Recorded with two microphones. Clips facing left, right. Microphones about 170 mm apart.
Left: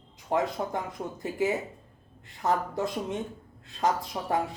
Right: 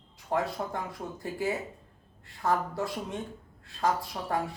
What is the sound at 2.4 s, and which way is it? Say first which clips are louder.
A man's voice: left 1 dB; 20° left (ahead or behind).